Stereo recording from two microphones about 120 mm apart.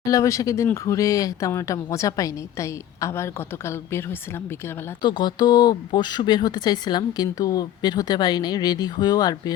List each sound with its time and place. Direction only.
0.0 s speech: 30° left (ahead or behind)
5.0 s speech: 35° left (ahead or behind)